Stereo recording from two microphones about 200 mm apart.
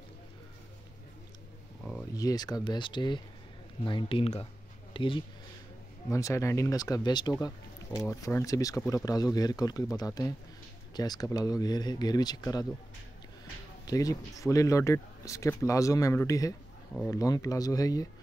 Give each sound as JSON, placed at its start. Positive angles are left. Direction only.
{"t": 2.1, "sound": "speech", "side_deg": 20}
{"t": 13.8, "sound": "speech", "side_deg": 15}